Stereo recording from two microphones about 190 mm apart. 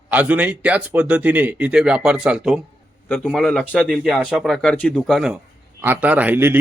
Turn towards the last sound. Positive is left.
turn(degrees=-10)  # may be behind; listen again after turning